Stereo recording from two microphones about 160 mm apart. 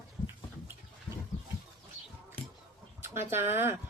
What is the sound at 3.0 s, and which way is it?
Speech, 15° right (ahead or behind).